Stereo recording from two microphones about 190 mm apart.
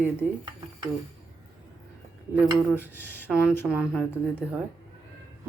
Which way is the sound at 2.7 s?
10° left (ahead or behind).